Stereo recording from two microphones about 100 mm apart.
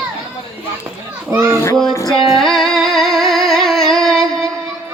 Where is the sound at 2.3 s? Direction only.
Centre (ahead or behind).